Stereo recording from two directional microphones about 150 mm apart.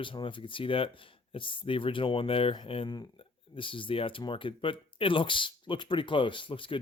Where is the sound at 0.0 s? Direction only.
35° left (ahead or behind).